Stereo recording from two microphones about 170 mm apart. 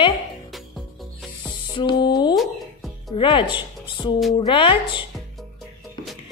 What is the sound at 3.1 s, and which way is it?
A woman's voice, 30° left (ahead or behind).